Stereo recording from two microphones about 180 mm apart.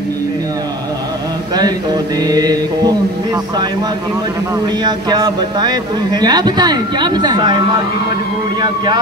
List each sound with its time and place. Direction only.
1.6 s a man's voice: 20° right (ahead or behind)
4.8 s a man's voice: 25° right (ahead or behind)